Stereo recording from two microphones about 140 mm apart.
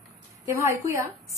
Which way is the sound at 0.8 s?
20° right (ahead or behind).